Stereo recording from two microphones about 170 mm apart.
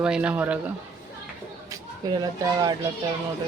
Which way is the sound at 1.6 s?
20° right (ahead or behind).